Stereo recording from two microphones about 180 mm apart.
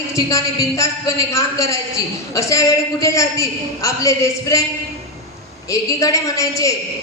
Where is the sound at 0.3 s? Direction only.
15° left (ahead or behind).